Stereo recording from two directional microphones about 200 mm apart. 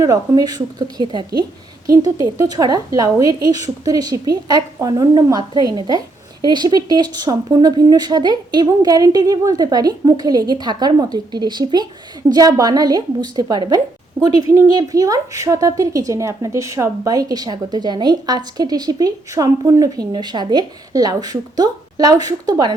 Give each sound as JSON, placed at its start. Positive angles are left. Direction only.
{"t": 0.0, "sound": "a woman's voice", "side_deg": -15}